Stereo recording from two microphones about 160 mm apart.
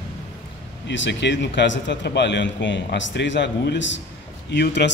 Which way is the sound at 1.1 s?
90° left.